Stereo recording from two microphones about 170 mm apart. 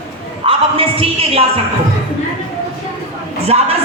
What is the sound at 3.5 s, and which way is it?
Speech, 40° right (ahead or behind).